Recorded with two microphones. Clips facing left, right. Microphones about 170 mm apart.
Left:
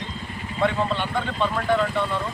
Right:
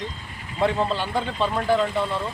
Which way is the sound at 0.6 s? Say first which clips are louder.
Right 1 dB; 35° right (ahead or behind).